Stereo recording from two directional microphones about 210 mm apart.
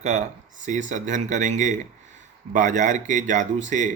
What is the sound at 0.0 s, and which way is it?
Speech, 35° right (ahead or behind).